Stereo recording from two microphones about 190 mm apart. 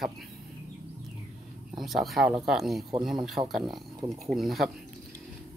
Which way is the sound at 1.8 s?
Centre (ahead or behind).